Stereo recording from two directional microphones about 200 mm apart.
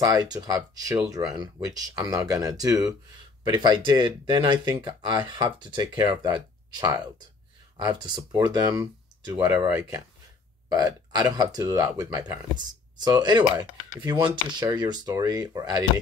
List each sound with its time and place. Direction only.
0.0 s speech: 20° right (ahead or behind)
10.7 s speech: 20° right (ahead or behind)